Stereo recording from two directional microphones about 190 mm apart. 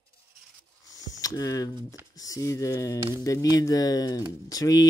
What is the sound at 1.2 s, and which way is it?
Speech, 20° left (ahead or behind).